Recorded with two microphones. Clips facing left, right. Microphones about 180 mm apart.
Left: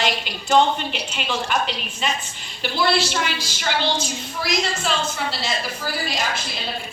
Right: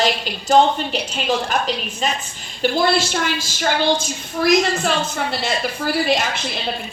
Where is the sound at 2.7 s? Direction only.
45° right (ahead or behind).